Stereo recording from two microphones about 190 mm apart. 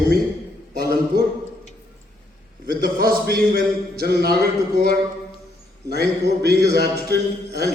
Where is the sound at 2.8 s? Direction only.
50° right (ahead or behind).